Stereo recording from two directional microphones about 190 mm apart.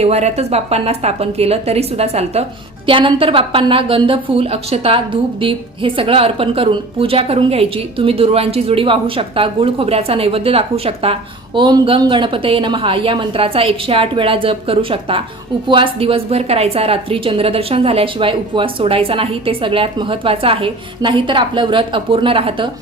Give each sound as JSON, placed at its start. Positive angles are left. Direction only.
{"t": 0.0, "sound": "a woman's voice", "side_deg": -35}